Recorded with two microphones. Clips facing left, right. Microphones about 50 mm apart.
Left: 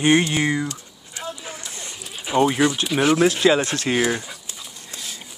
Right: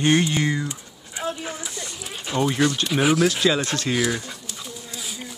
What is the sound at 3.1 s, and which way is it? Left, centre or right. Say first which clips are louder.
Speech: left 3 dB; left.